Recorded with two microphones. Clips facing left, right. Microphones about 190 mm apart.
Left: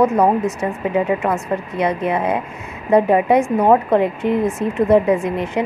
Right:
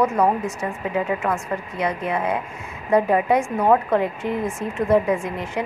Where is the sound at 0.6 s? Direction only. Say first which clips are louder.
Left 5 dB; 20° left (ahead or behind).